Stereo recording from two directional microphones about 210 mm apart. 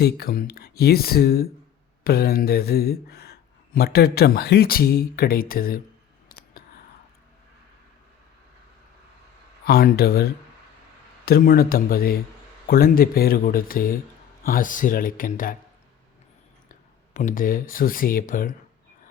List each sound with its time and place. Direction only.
0.0 s speech: 45° left (ahead or behind)
9.6 s speech: 50° left (ahead or behind)
11.3 s speech: 45° left (ahead or behind)
17.2 s speech: 40° left (ahead or behind)